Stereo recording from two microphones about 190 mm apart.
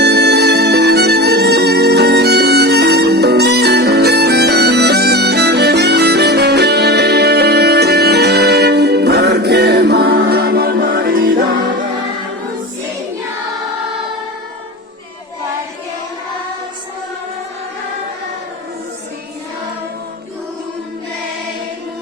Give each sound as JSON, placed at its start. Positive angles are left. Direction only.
{"t": 0.0, "sound": "music", "side_deg": -60}